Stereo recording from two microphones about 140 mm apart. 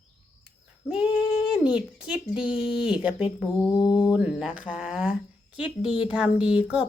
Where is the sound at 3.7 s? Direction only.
30° left (ahead or behind).